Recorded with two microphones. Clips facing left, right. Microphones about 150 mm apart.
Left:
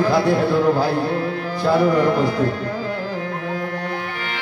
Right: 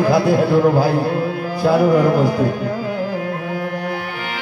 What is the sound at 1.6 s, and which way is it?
Music, 5° right (ahead or behind).